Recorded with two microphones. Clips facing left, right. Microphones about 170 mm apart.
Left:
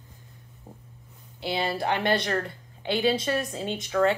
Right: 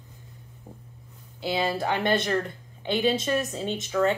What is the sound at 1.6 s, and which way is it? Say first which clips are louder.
Speech: even; 20° right (ahead or behind).